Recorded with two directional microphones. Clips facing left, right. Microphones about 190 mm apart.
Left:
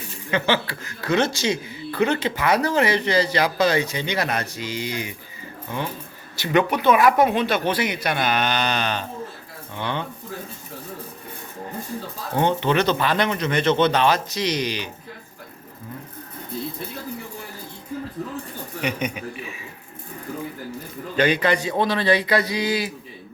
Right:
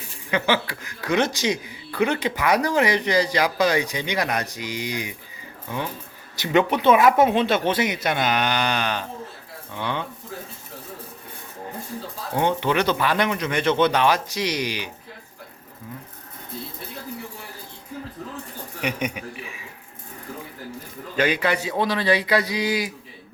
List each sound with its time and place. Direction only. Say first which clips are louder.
0.3 s speech: even; 10° right (ahead or behind)
6.3 s speech: even; 20° right (ahead or behind)
12.4 s speech: left 1 dB; 10° right (ahead or behind)
18.8 s speech: left 1 dB; 10° right (ahead or behind)
21.2 s speech: left 2 dB; 10° right (ahead or behind)